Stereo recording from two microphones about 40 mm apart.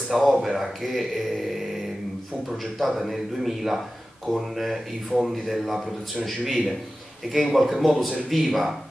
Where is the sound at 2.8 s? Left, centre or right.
Centre.